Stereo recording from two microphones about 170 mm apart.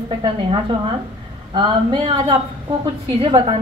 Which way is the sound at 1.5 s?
25° right (ahead or behind).